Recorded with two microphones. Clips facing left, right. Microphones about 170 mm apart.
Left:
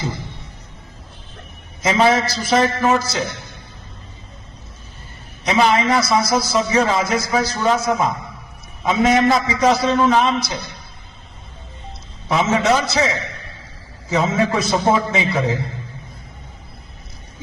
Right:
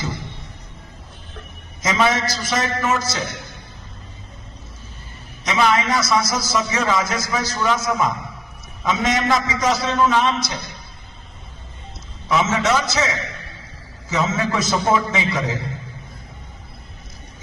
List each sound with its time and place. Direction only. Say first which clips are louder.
1.8 s a man's voice: left 4 dB; 30° left (ahead or behind)
5.5 s a man's voice: left 3 dB; 30° left (ahead or behind)
12.3 s a man's voice: left 2 dB; 30° left (ahead or behind)